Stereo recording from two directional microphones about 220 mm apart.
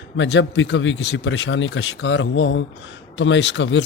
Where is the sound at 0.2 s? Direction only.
55° left (ahead or behind).